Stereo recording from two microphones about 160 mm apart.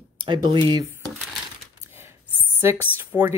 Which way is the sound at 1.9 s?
15° right (ahead or behind).